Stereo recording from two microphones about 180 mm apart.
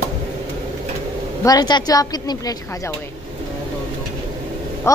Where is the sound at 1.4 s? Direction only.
20° left (ahead or behind).